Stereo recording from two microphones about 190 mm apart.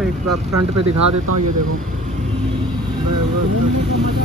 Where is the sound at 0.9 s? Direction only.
90° right.